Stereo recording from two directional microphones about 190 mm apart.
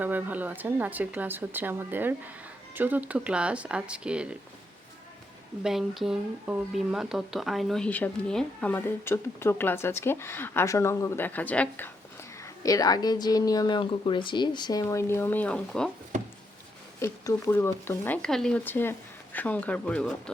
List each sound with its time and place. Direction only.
0.0 s speech: 10° right (ahead or behind)
5.6 s speech: centre (ahead or behind)
12.4 s a woman's voice: 20° left (ahead or behind)
17.0 s speech: 15° left (ahead or behind)